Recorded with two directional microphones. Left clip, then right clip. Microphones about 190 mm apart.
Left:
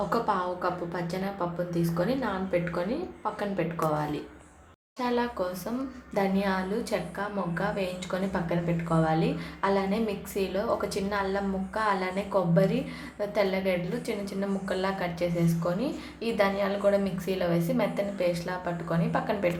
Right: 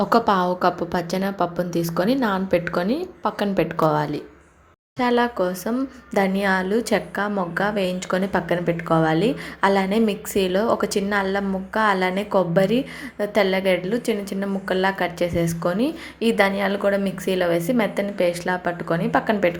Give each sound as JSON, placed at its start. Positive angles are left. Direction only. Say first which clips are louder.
{"t": 0.1, "sound": "a woman's voice", "louder": "right 9 dB", "side_deg": -40}